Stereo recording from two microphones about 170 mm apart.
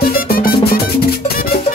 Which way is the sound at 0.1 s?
60° left (ahead or behind).